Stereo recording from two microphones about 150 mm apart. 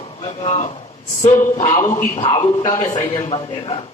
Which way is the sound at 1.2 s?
55° left (ahead or behind).